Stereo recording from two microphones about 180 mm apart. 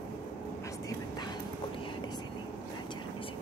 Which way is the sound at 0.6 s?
20° left (ahead or behind).